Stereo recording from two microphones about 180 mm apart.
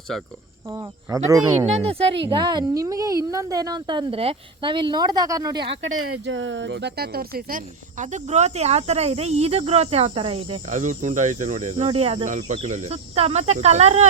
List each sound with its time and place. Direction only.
0.1 s speech: centre (ahead or behind)
0.7 s a woman's voice: 20° right (ahead or behind)
1.6 s a woman's voice: 35° right (ahead or behind); by 5.6 s 20° right (ahead or behind)
5.7 s speech: 90° right; by 10.6 s 30° right (ahead or behind)
10.7 s speech: 40° right (ahead or behind)